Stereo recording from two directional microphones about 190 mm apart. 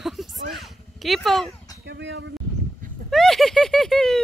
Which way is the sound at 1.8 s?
70° right (ahead or behind).